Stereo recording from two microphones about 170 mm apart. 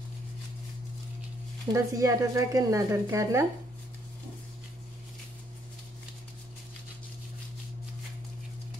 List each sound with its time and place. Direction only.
1.7 s speech: 20° right (ahead or behind)